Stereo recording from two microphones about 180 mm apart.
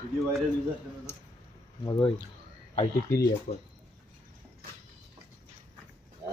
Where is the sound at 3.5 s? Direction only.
55° left (ahead or behind).